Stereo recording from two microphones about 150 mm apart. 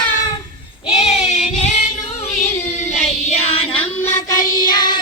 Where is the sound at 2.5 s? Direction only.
50° left (ahead or behind).